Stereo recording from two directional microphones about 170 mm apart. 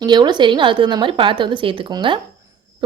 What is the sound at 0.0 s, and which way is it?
A woman's voice, 25° right (ahead or behind).